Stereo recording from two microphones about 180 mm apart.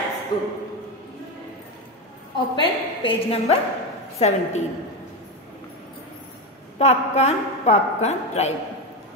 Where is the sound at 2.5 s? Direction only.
30° left (ahead or behind).